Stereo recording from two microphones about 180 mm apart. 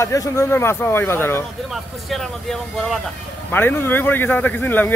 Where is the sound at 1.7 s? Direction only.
Centre (ahead or behind).